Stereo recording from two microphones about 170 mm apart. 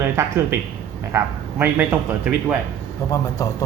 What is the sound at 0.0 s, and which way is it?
A man's voice, 15° right (ahead or behind).